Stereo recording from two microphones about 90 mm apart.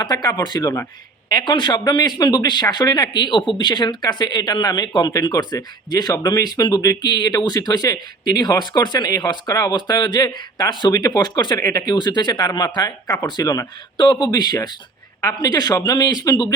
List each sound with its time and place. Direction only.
0.0 s speech: 50° left (ahead or behind)
13.9 s speech: 55° left (ahead or behind)